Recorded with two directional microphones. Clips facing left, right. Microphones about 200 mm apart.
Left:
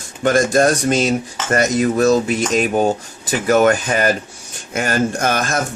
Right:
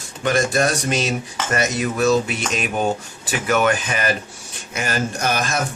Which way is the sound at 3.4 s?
40° left (ahead or behind).